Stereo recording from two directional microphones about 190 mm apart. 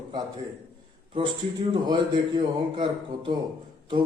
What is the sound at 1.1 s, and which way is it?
A man's voice, 25° right (ahead or behind).